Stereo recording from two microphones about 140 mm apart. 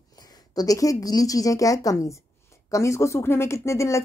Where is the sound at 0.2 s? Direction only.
30° left (ahead or behind).